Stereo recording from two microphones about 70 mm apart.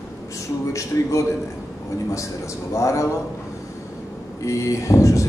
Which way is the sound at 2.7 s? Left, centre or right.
Left.